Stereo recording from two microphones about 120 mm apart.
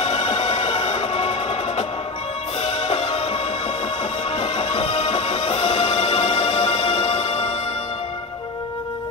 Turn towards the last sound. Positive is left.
turn(degrees=50)  # may be behind; listen again after turning